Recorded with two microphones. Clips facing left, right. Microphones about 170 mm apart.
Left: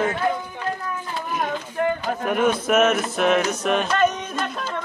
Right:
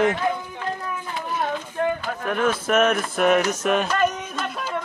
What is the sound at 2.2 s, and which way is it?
Speech, 10° left (ahead or behind).